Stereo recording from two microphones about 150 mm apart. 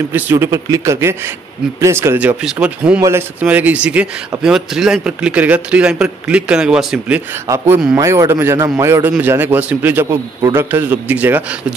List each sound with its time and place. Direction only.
0.1 s a man's voice: 15° right (ahead or behind)
7.4 s speech: 15° right (ahead or behind)